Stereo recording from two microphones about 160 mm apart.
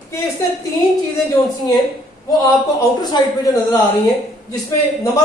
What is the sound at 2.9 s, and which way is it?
Speech, 25° left (ahead or behind).